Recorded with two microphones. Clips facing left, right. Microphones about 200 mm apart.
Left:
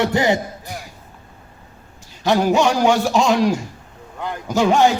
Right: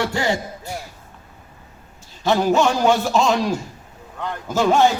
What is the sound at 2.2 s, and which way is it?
A man's voice, 15° left (ahead or behind).